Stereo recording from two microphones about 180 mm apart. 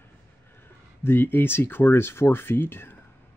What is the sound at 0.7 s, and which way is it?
Speech, 10° left (ahead or behind).